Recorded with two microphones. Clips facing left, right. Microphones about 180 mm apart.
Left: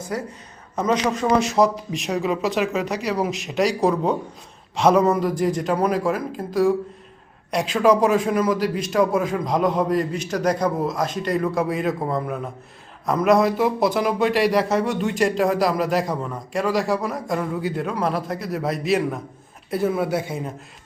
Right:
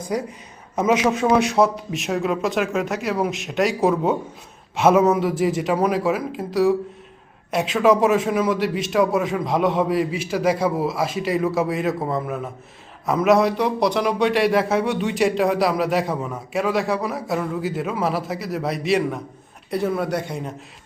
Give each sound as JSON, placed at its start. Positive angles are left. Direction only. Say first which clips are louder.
{"t": 0.1, "sound": "a man's voice", "louder": "right 4 dB", "side_deg": -15}